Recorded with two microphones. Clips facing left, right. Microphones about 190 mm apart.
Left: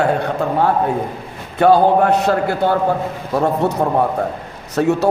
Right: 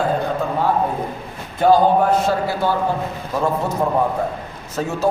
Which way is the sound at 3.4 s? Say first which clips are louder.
Left 3 dB; 70° left (ahead or behind).